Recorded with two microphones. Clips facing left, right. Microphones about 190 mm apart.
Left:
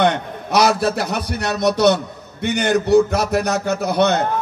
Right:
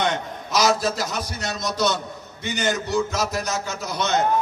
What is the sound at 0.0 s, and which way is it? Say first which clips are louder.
A man's voice: left 7 dB; 60° left (ahead or behind).